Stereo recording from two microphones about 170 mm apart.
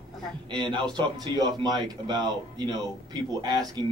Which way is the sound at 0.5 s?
25° right (ahead or behind).